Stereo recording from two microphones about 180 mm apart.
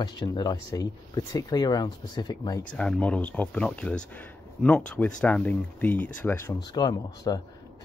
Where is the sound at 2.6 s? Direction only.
5° left (ahead or behind).